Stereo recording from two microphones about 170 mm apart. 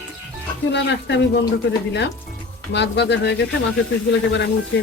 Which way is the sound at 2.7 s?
90° left.